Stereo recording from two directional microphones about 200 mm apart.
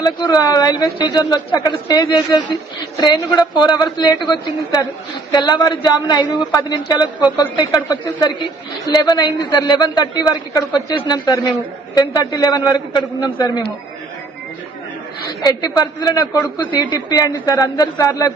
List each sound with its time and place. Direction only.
0.0 s speech: 20° left (ahead or behind)
15.3 s a man's voice: 20° left (ahead or behind)